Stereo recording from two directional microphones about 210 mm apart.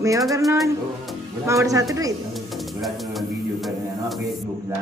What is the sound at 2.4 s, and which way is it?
Music, centre (ahead or behind).